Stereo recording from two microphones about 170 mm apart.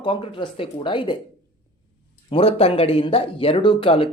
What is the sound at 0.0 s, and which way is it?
Speech, 30° left (ahead or behind).